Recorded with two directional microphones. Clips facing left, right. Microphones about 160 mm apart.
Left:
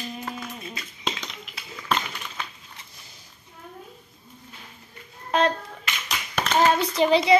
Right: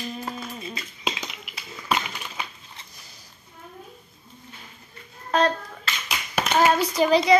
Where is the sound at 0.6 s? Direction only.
5° right (ahead or behind).